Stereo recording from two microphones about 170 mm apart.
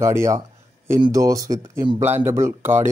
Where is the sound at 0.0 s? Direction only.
15° right (ahead or behind).